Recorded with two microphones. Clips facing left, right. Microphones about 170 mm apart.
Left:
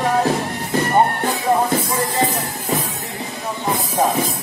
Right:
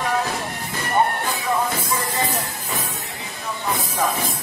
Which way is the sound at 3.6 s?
35° left (ahead or behind).